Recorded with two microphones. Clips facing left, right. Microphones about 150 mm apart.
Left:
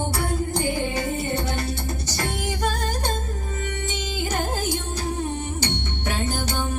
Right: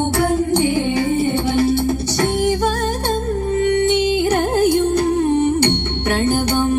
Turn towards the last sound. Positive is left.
turn(degrees=-65)  # may be behind; listen again after turning